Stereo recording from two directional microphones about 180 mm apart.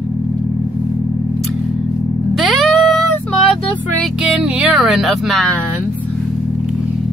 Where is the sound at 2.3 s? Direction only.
Centre (ahead or behind).